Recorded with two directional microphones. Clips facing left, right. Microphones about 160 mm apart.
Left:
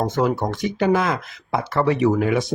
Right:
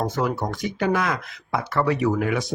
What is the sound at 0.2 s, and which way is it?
Speech, 20° left (ahead or behind).